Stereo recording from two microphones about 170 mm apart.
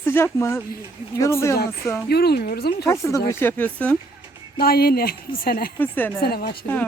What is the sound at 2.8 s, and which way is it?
Speech, 20° left (ahead or behind).